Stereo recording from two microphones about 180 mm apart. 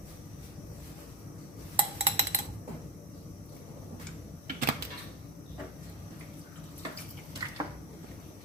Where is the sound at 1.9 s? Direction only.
35° right (ahead or behind).